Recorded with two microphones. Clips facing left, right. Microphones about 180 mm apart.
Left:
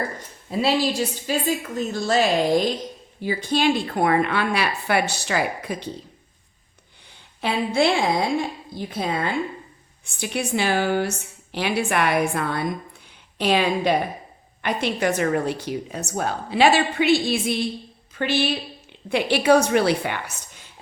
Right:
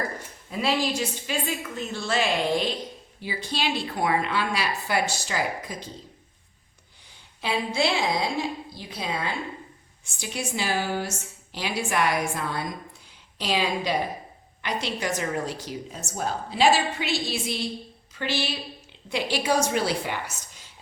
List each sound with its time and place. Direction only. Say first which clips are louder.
0.5 s a woman's voice: left 4 dB; 30° left (ahead or behind); by 5.9 s 65° left (ahead or behind)
7.4 s a woman's voice: left 5 dB; 55° left (ahead or behind)